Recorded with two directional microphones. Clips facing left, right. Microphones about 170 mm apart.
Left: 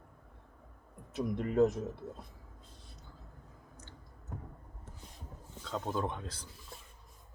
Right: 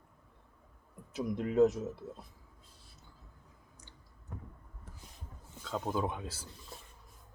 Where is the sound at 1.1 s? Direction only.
Centre (ahead or behind).